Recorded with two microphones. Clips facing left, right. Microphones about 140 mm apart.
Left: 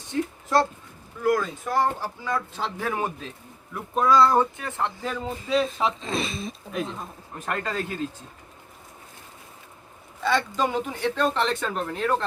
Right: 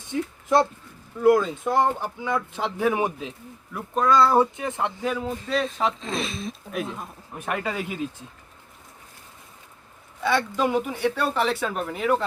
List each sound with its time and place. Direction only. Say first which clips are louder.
0.1 s a sound: right 1 dB; 15° right (ahead or behind)
1.2 s speech: right 5 dB; 25° right (ahead or behind)
3.8 s speech: even; centre (ahead or behind)
4.5 s speech: right 2 dB; 20° right (ahead or behind)
5.0 s speech: right 3 dB; 5° right (ahead or behind)
10.2 s speech: right 1 dB; 10° right (ahead or behind)